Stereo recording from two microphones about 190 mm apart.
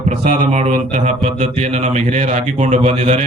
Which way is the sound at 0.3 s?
35° right (ahead or behind).